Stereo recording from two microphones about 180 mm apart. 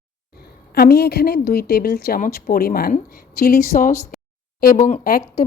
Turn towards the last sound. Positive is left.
turn(degrees=55)  # may be behind; listen again after turning